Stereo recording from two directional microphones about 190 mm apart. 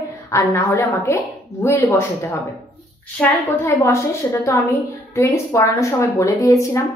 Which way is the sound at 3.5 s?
15° left (ahead or behind).